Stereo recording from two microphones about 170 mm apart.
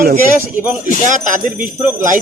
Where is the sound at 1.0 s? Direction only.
50° right (ahead or behind).